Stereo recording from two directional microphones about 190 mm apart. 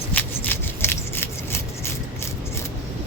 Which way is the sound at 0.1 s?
10° left (ahead or behind).